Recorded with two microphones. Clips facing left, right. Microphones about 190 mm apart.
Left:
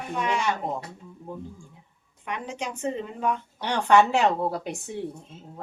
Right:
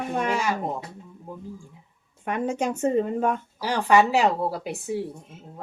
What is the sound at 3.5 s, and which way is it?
A woman's voice, 5° right (ahead or behind).